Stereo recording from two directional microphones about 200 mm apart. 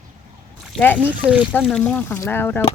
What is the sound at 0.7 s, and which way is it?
Speech, 10° left (ahead or behind).